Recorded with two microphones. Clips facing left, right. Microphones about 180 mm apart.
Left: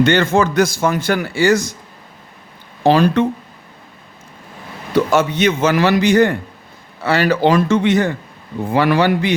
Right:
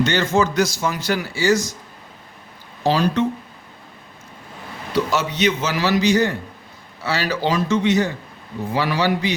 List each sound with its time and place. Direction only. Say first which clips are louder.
0.0 s a man's voice: left 4 dB; 55° left (ahead or behind)
2.8 s a man's voice: left 6 dB; 55° left (ahead or behind)
4.9 s a man's voice: left 6 dB; 50° left (ahead or behind)